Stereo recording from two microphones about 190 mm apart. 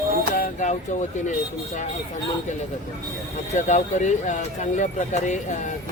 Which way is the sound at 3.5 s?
40° left (ahead or behind).